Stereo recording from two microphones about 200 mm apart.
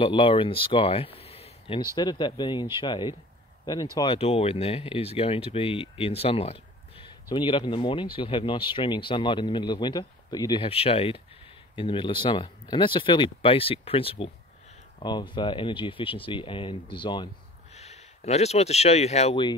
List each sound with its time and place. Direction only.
0.0 s speech: 25° left (ahead or behind)